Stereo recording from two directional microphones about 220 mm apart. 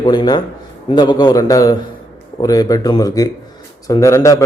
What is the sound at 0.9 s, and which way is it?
A man's voice, 20° left (ahead or behind).